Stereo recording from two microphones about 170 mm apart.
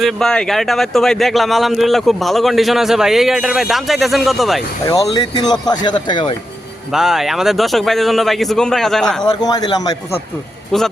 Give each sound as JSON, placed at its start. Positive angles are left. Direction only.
{"t": 0.0, "sound": "a man's voice", "side_deg": 0}
{"t": 4.9, "sound": "speech", "side_deg": 25}
{"t": 6.9, "sound": "a man's voice", "side_deg": 0}
{"t": 9.2, "sound": "speech", "side_deg": 25}
{"t": 10.7, "sound": "a man's voice", "side_deg": 0}